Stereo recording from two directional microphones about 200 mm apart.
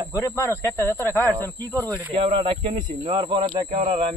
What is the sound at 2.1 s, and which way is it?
Speech, 30° right (ahead or behind).